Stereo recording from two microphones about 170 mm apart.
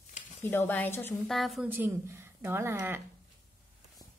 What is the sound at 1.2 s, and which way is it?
Speech, centre (ahead or behind).